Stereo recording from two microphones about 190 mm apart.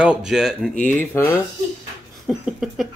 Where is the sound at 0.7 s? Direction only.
10° left (ahead or behind).